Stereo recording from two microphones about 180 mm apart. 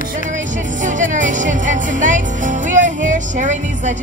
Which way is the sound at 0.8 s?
45° right (ahead or behind).